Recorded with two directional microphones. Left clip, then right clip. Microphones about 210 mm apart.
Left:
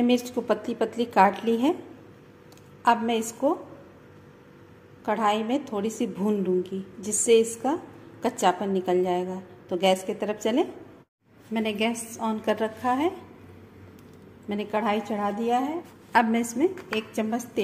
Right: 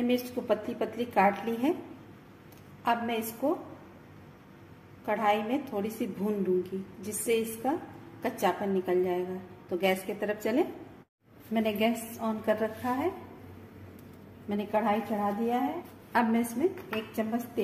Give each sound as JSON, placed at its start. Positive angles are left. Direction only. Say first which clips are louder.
{"t": 0.0, "sound": "speech", "louder": "left 6 dB", "side_deg": 35}
{"t": 2.8, "sound": "speech", "louder": "left 7 dB", "side_deg": 35}
{"t": 5.0, "sound": "a woman's voice", "louder": "left 3 dB", "side_deg": 35}
{"t": 12.2, "sound": "speech", "louder": "left 4 dB", "side_deg": 40}
{"t": 14.5, "sound": "speech", "louder": "left 2 dB", "side_deg": 35}